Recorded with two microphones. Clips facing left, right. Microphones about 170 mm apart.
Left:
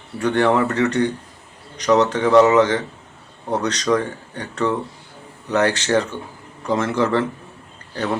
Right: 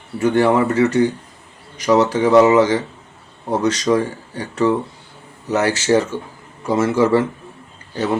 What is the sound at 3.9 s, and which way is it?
Speech, 5° right (ahead or behind).